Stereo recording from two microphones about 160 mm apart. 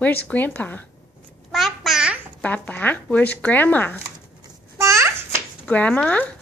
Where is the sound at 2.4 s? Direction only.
10° left (ahead or behind).